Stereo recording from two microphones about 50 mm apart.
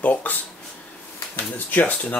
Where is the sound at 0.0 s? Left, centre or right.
Left.